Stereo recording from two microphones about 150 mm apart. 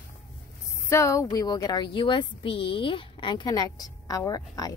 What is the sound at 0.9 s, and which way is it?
A woman's voice, 20° left (ahead or behind).